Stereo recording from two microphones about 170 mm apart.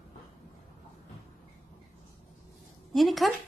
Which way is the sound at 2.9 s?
Centre (ahead or behind).